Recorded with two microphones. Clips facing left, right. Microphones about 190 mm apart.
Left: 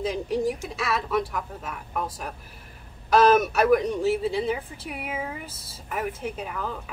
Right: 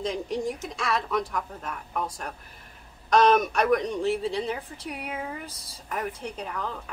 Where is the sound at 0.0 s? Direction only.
5° left (ahead or behind).